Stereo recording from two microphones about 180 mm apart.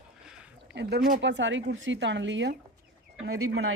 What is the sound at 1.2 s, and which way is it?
Speech, 85° right.